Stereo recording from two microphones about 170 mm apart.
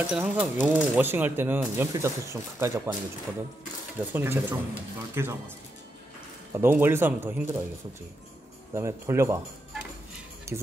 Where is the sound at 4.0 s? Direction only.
15° right (ahead or behind).